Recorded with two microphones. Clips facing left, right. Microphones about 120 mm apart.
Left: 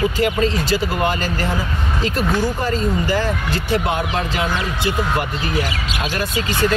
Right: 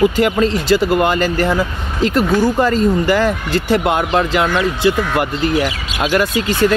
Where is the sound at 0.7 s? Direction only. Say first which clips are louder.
Right 6 dB; 85° right; by 4.6 s 65° right (ahead or behind).